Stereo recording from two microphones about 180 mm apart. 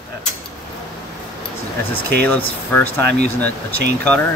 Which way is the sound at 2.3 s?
10° left (ahead or behind).